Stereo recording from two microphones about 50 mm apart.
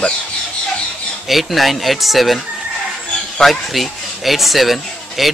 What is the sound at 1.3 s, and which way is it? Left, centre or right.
Speech, centre.